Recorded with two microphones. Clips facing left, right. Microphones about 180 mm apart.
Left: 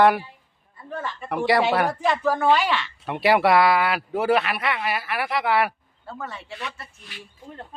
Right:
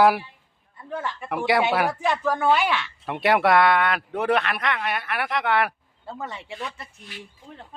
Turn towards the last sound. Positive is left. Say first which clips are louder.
# right 3 dB
turn(degrees=90)